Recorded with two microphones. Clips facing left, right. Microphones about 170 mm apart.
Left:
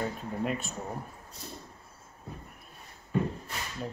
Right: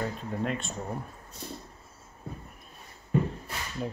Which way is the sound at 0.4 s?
5° left (ahead or behind).